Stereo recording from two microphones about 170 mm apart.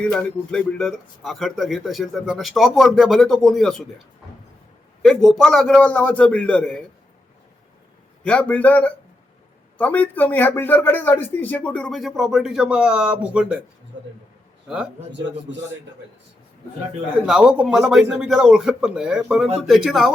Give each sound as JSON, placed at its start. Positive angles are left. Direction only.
{"t": 0.0, "sound": "a man's voice", "side_deg": 5}
{"t": 5.0, "sound": "a man's voice", "side_deg": 0}
{"t": 8.2, "sound": "a man's voice", "side_deg": 5}
{"t": 13.9, "sound": "speech", "side_deg": -90}
{"t": 17.2, "sound": "a man's voice", "side_deg": -5}